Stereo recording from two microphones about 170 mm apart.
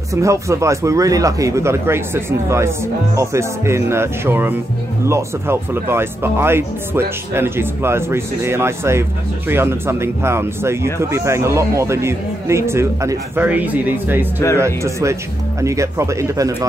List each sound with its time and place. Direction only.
0.1 s speech: 15° right (ahead or behind)